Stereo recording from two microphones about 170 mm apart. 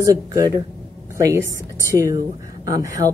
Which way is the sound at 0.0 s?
20° right (ahead or behind).